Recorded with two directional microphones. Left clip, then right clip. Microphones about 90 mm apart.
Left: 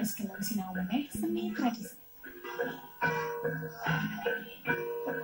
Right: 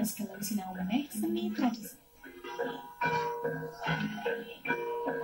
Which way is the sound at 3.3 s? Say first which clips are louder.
Even; 20° right (ahead or behind).